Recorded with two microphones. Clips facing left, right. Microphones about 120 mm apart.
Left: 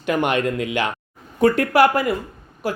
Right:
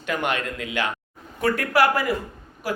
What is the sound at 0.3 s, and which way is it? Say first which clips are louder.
Speech: left 6 dB; 15° left (ahead or behind).